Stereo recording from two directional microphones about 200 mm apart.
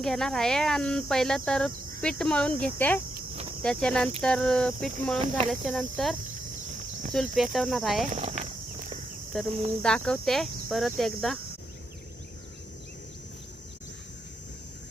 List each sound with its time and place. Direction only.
0.0 s speech: centre (ahead or behind)
8.1 s a sound: 35° right (ahead or behind)
9.3 s speech: centre (ahead or behind)